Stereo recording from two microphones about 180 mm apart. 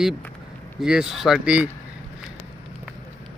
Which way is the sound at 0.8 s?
5° right (ahead or behind).